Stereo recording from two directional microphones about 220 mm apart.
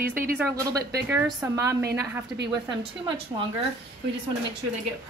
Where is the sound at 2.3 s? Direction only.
50° right (ahead or behind).